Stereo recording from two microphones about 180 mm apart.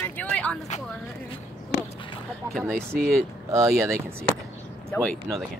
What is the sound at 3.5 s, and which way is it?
Speech, 15° right (ahead or behind).